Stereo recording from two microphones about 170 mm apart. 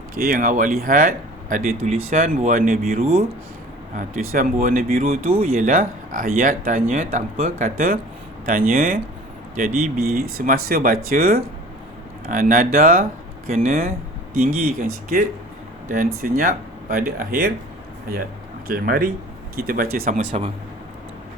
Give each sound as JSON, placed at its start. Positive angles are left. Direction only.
{"t": 0.2, "sound": "speech", "side_deg": -55}
{"t": 3.0, "sound": "speech", "side_deg": -35}
{"t": 3.9, "sound": "speech", "side_deg": -55}
{"t": 18.7, "sound": "speech", "side_deg": -60}